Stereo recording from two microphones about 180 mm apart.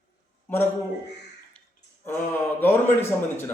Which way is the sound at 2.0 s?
10° left (ahead or behind).